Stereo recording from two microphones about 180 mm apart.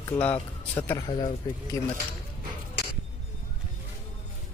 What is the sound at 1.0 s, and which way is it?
Speech, 25° left (ahead or behind).